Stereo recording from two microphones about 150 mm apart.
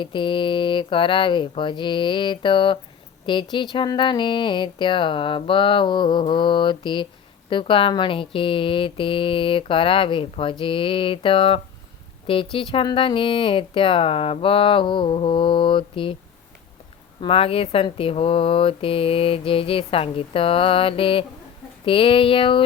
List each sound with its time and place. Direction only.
0.0 s speech: 35° left (ahead or behind)
17.2 s speech: 35° left (ahead or behind)